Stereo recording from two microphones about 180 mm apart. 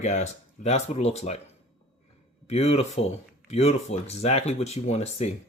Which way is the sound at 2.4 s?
35° left (ahead or behind).